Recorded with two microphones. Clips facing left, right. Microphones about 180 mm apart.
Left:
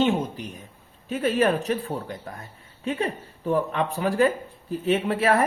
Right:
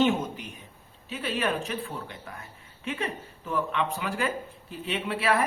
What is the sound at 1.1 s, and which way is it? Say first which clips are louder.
Speech: left 7 dB; 45° left (ahead or behind).